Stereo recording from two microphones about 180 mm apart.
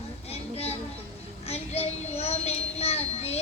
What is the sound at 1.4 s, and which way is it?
Child singing, 35° left (ahead or behind).